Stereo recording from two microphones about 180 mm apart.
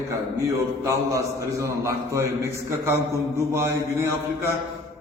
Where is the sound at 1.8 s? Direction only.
15° right (ahead or behind).